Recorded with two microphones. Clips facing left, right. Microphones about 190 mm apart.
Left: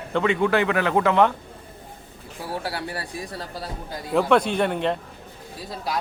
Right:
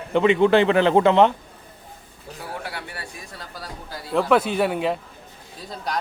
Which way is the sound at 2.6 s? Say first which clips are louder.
Left 4 dB; 35° left (ahead or behind).